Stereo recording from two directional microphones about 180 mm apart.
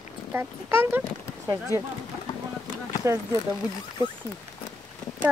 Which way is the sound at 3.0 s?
15° right (ahead or behind).